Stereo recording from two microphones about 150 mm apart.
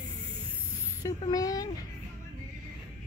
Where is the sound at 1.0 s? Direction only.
25° left (ahead or behind).